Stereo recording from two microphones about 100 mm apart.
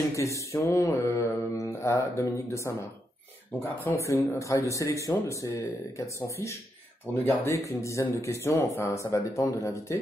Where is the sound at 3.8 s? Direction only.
30° left (ahead or behind).